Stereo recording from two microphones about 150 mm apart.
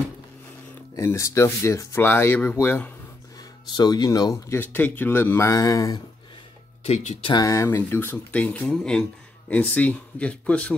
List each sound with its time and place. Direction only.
0.9 s speech: 20° left (ahead or behind)
3.7 s speech: 25° left (ahead or behind)
6.8 s speech: 45° left (ahead or behind)
7.2 s speech: 25° left (ahead or behind); by 10.8 s 10° left (ahead or behind)